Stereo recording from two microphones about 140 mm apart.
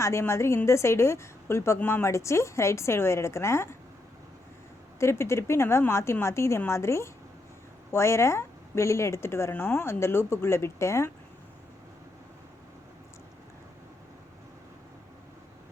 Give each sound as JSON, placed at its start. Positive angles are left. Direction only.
{"t": 0.0, "sound": "a woman's voice", "side_deg": 20}
{"t": 4.9, "sound": "a woman's voice", "side_deg": 20}